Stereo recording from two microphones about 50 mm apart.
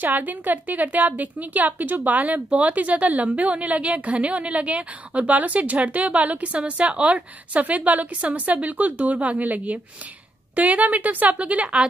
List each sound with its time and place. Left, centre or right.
0.0 s a woman's voice: right